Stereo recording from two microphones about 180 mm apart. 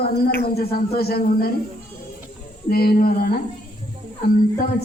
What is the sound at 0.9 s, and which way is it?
Speech, 60° left (ahead or behind).